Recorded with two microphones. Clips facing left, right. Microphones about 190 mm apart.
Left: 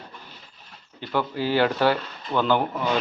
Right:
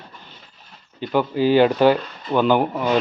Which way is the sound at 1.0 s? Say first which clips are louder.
Right 6 dB; 15° right (ahead or behind).